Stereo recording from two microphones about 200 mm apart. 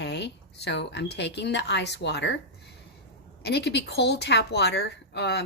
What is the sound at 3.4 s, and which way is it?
A woman's voice, 55° left (ahead or behind).